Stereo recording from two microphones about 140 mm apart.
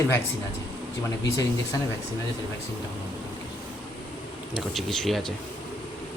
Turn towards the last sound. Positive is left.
turn(degrees=0)  # may be behind; listen again after turning